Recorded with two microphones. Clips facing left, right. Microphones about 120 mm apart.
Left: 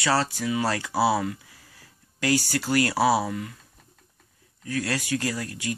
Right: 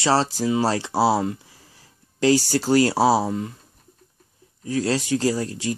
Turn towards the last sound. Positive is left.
turn(degrees=-30)  # may be behind; listen again after turning